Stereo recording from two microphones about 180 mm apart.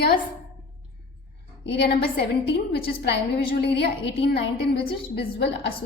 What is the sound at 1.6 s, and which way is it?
A woman's voice, 70° left (ahead or behind).